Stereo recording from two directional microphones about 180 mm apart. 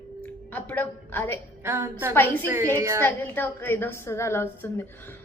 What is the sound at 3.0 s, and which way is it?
A woman's voice, 10° left (ahead or behind).